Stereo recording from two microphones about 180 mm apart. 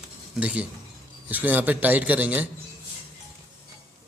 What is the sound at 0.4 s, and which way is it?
Speech, 5° right (ahead or behind).